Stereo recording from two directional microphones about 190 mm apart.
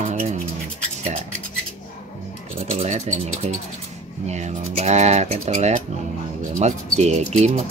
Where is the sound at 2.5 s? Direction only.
35° right (ahead or behind).